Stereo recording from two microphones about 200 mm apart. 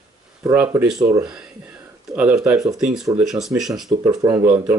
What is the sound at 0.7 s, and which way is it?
Speech, 5° right (ahead or behind).